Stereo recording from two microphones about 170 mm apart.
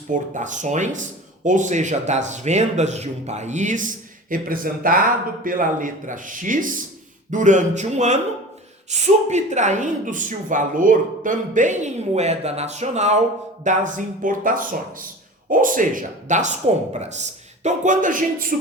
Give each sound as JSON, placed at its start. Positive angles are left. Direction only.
{"t": 0.1, "sound": "speech", "side_deg": -45}